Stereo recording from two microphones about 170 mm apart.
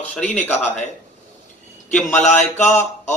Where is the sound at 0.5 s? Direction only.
40° left (ahead or behind).